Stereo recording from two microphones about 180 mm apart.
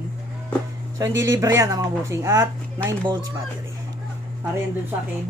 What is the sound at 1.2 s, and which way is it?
Speech, 20° right (ahead or behind).